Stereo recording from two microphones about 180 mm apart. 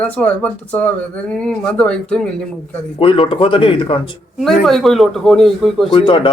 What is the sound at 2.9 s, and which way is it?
Speech, 30° left (ahead or behind).